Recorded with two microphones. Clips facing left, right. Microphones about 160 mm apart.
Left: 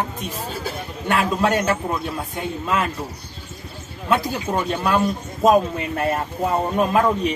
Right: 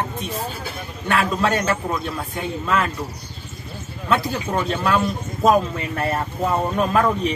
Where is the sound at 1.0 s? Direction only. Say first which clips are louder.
Left 1 dB; 15° left (ahead or behind).